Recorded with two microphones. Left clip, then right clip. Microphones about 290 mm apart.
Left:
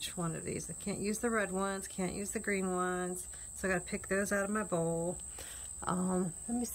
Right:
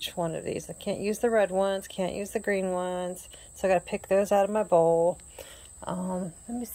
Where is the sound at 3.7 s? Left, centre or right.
Right.